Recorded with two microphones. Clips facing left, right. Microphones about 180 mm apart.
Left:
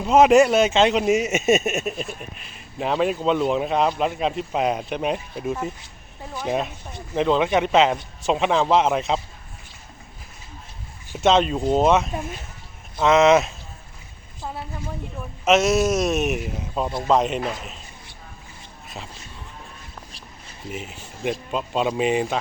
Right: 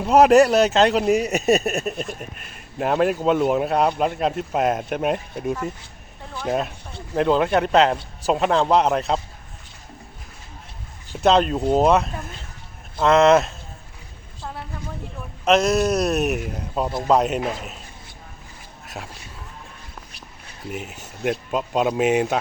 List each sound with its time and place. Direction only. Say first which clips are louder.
0.0 s a man's voice: right 1 dB; centre (ahead or behind)
2.4 s speech: right 1 dB; 55° right (ahead or behind)
2.7 s a man's voice: right 2 dB; 5° right (ahead or behind)
6.4 s a man's voice: right 1 dB; centre (ahead or behind)
11.2 s a man's voice: right 1 dB; centre (ahead or behind)
15.4 s a man's voice: even; 5° left (ahead or behind)
20.7 s a man's voice: right 2 dB; centre (ahead or behind)